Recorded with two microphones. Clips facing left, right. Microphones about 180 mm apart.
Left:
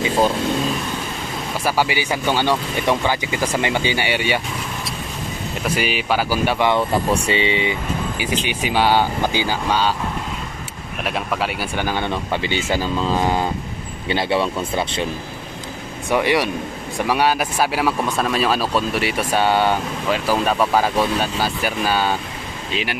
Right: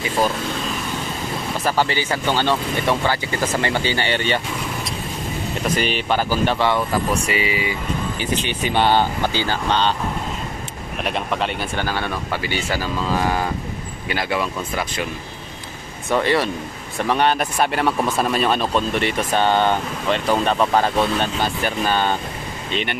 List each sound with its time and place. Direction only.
1.6 s speech: 10° left (ahead or behind)
5.8 s speech: 5° left (ahead or behind)
6.7 s speech: 25° left (ahead or behind)
8.2 s speech: 10° left (ahead or behind)
11.1 s speech: 5° left (ahead or behind); by 15.0 s 30° left (ahead or behind)
16.1 s speech: 15° left (ahead or behind)